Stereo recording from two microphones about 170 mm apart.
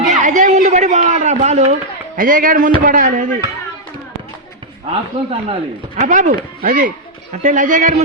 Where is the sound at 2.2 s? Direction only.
55° right (ahead or behind).